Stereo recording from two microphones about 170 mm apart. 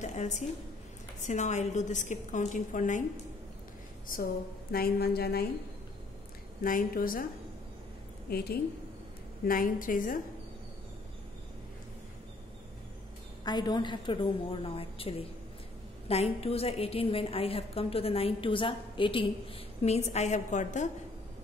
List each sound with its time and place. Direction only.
0.0 s a woman's voice: 45° left (ahead or behind)
4.7 s a woman's voice: 65° left (ahead or behind)
6.6 s a woman's voice: 55° left (ahead or behind)
8.3 s a woman's voice: 65° left (ahead or behind)
9.5 s a woman's voice: 55° left (ahead or behind)
13.4 s a woman's voice: 25° left (ahead or behind); by 20.9 s 45° left (ahead or behind)